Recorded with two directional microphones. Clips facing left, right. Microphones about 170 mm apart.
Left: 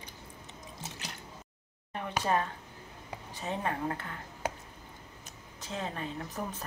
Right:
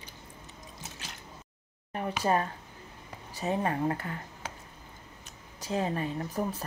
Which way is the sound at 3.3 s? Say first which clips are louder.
Right 5 dB; 10° right (ahead or behind).